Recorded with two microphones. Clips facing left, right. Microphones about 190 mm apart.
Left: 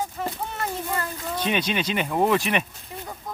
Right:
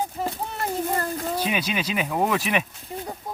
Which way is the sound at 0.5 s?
35° right (ahead or behind).